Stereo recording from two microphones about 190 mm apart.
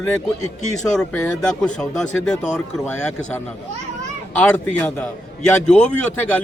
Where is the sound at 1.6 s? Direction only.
5° left (ahead or behind).